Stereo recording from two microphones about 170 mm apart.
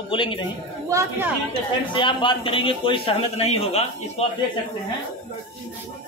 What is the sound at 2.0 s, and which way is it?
Speech, 30° left (ahead or behind).